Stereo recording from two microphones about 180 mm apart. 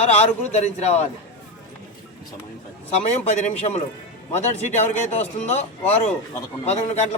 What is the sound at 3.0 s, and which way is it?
Speech, 35° left (ahead or behind).